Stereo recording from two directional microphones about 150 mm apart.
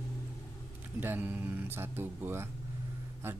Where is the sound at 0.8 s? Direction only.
15° right (ahead or behind).